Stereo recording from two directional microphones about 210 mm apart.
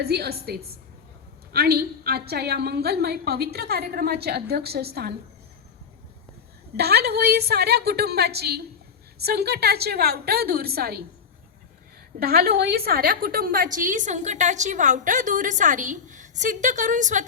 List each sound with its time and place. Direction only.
0.0 s a woman's voice: 50° right (ahead or behind)
6.7 s a woman's voice: 50° right (ahead or behind)
12.2 s a woman's voice: 45° right (ahead or behind)